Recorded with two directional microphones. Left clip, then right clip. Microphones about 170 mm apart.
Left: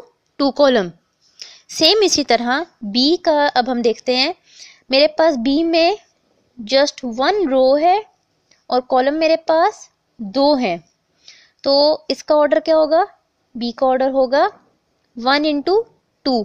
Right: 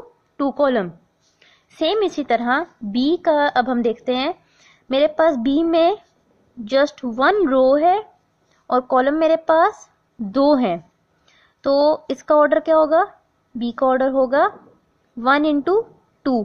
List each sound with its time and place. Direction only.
0.4 s a woman's voice: 45° left (ahead or behind)
6.6 s a woman's voice: 20° left (ahead or behind)